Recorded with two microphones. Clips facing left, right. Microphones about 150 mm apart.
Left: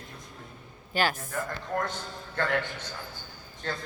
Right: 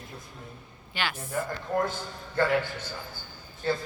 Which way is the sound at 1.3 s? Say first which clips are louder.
Right 3 dB; 10° right (ahead or behind).